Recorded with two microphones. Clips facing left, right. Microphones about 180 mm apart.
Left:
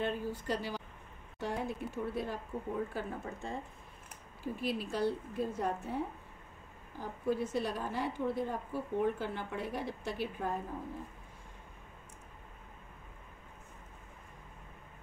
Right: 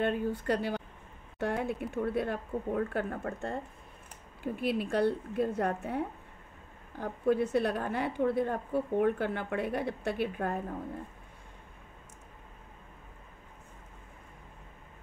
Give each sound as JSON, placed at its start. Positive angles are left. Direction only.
{"t": 0.0, "sound": "a woman's voice", "side_deg": -60}